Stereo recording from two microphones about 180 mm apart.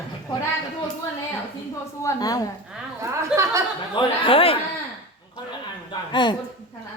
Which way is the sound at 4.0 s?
30° left (ahead or behind).